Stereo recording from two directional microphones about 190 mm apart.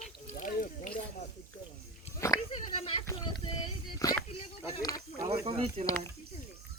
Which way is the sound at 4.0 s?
20° left (ahead or behind).